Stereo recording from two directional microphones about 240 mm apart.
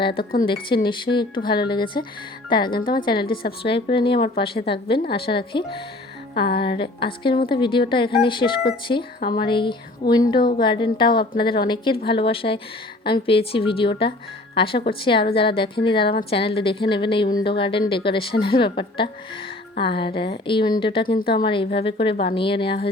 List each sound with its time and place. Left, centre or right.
0.1 s speech: left
0.4 s a woman's voice: left
2.8 s speech: left
3.6 s a woman's voice: left